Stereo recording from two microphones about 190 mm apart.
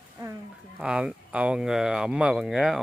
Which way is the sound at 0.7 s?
5° right (ahead or behind).